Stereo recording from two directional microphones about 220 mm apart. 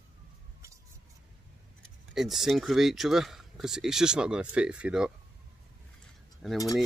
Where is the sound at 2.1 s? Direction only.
Centre (ahead or behind).